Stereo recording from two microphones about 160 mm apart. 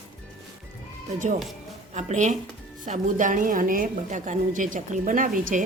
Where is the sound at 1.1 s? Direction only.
55° right (ahead or behind).